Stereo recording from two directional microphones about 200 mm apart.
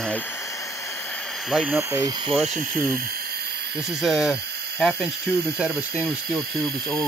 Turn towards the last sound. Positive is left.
turn(degrees=-5)  # may be behind; listen again after turning